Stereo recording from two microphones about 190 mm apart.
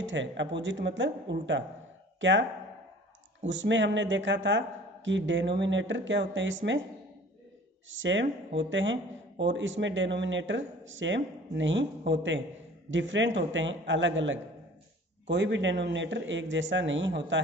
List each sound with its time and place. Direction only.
0.0 s speech: 75° right (ahead or behind)
7.9 s speech: 80° right